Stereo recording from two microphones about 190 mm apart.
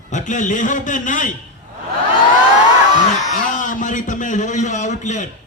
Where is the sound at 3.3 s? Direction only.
45° left (ahead or behind).